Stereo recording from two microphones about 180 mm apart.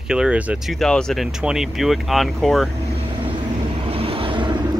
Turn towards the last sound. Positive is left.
turn(degrees=-25)  # may be behind; listen again after turning